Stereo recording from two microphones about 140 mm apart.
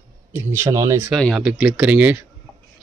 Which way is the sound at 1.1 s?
Centre (ahead or behind).